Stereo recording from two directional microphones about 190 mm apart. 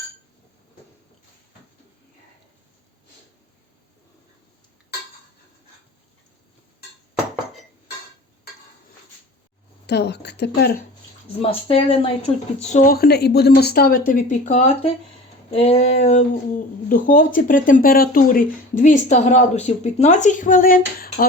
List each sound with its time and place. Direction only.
9.8 s speech: 60° left (ahead or behind)
11.4 s speech: 30° left (ahead or behind)
12.7 s speech: 50° left (ahead or behind)